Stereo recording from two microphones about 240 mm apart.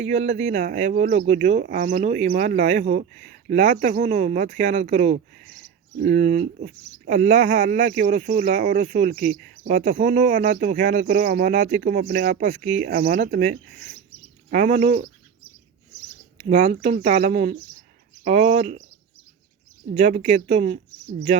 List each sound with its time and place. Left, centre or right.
0.0 s speech: right
16.4 s speech: right
19.9 s speech: right